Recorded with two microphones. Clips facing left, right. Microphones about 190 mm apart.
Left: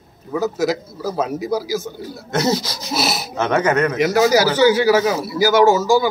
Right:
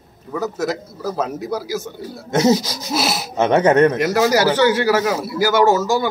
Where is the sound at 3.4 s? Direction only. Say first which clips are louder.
Right 4 dB; 30° right (ahead or behind).